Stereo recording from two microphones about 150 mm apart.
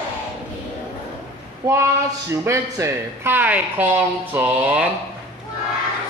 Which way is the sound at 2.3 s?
20° right (ahead or behind).